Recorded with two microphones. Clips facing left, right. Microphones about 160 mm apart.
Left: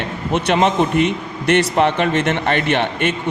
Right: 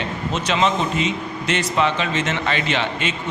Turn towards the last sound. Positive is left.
turn(degrees=55)  # may be behind; listen again after turning